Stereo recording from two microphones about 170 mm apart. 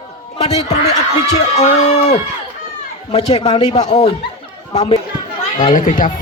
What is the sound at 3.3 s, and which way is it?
Speech, 40° left (ahead or behind).